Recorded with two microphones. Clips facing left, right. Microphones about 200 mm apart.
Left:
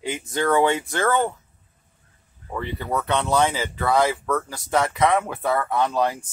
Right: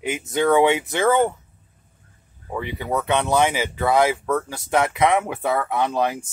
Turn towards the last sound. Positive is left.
turn(degrees=-15)  # may be behind; listen again after turning